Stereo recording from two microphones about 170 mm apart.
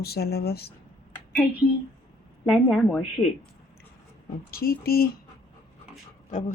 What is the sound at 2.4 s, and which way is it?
Speech, centre (ahead or behind).